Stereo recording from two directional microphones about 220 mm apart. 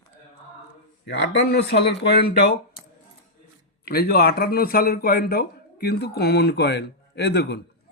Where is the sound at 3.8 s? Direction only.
45° left (ahead or behind).